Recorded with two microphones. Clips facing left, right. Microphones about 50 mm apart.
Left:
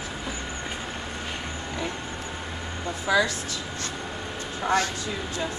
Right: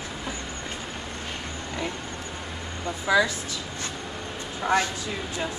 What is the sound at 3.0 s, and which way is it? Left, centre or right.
Speech, centre.